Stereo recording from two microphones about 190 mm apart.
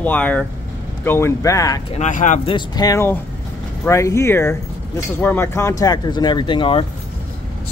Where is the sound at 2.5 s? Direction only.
20° left (ahead or behind).